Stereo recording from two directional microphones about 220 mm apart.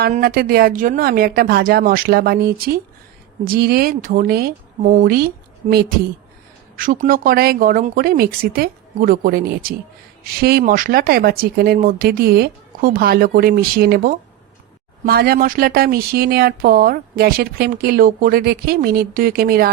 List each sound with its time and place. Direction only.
0.0 s speech: 40° right (ahead or behind)